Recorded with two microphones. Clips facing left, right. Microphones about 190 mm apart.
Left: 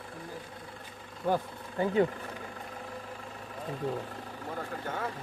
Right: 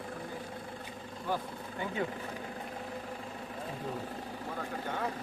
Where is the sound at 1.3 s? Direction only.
50° left (ahead or behind).